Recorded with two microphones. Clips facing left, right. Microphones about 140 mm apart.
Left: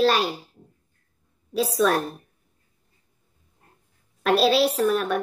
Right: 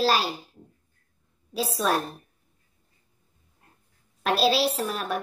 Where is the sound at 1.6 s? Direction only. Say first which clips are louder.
Left 7 dB; 30° right (ahead or behind).